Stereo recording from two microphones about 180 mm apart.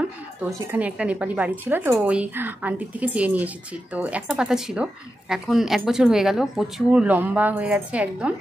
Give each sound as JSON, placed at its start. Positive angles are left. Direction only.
{"t": 0.7, "sound": "a woman's voice", "side_deg": -10}